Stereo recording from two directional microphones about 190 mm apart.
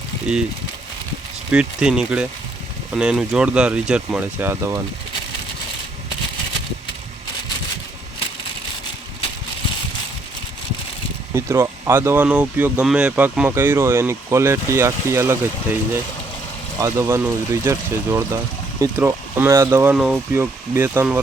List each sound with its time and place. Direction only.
1.5 s speech: 5° right (ahead or behind)
11.3 s speech: 15° right (ahead or behind)
16.8 s speech: 15° right (ahead or behind)